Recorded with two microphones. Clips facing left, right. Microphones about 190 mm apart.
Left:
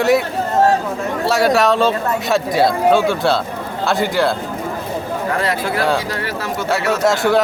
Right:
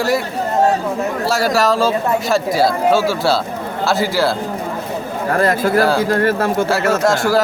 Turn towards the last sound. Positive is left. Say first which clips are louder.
# even
turn(degrees=0)  # may be behind; listen again after turning